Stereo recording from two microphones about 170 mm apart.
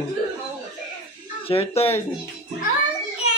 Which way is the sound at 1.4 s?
35° left (ahead or behind).